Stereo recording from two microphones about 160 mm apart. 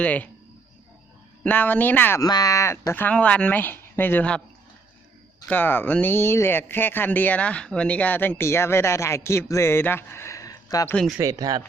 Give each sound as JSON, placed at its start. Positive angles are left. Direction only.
{"t": 0.0, "sound": "speech", "side_deg": 10}
{"t": 1.5, "sound": "speech", "side_deg": 10}
{"t": 2.2, "sound": "speech", "side_deg": 25}
{"t": 5.5, "sound": "speech", "side_deg": 10}
{"t": 10.8, "sound": "speech", "side_deg": 5}
{"t": 11.2, "sound": "speech", "side_deg": -20}